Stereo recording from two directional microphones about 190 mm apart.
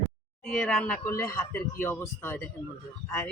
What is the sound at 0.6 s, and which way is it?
A man's voice, 10° left (ahead or behind).